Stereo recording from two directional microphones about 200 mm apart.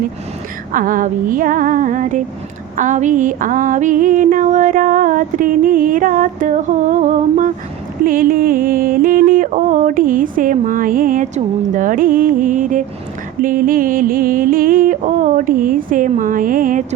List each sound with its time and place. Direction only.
0.7 s yodeling: 45° right (ahead or behind)
2.7 s a sound: 40° right (ahead or behind)
8.0 s yodeling: 45° right (ahead or behind)